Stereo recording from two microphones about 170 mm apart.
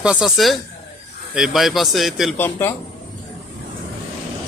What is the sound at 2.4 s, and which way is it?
Speech, 10° left (ahead or behind).